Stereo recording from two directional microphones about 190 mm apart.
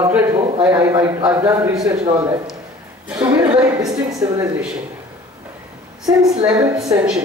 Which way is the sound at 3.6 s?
20° right (ahead or behind).